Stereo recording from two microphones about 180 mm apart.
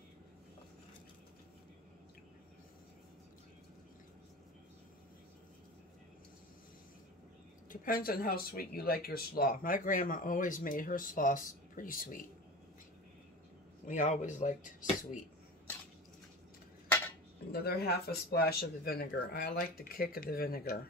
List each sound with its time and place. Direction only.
7.7 s speech: 55° left (ahead or behind)
13.8 s speech: 40° left (ahead or behind)
17.5 s speech: 60° left (ahead or behind)